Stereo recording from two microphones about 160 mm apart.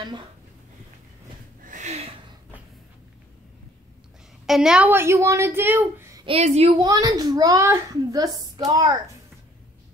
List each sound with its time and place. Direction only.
1.7 s a sound: 45° right (ahead or behind)
4.5 s a woman's voice: 5° right (ahead or behind)
6.2 s a woman's voice: 40° right (ahead or behind)
6.8 s a child's voice: 25° right (ahead or behind)